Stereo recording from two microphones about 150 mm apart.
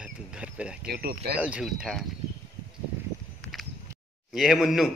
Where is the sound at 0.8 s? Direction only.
90° right.